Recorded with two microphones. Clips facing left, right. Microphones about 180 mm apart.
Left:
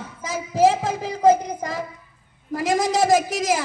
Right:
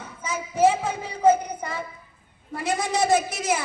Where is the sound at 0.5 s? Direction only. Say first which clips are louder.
Left 2 dB; 90° left.